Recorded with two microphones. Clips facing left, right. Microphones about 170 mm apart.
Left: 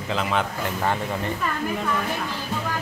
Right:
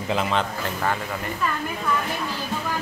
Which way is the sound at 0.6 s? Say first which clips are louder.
Left 1 dB; 15° left (ahead or behind).